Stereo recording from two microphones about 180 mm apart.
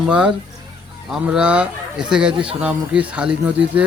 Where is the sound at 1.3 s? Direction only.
5° right (ahead or behind).